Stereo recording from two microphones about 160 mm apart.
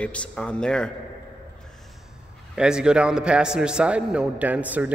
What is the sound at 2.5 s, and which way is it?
A man's voice, 5° right (ahead or behind).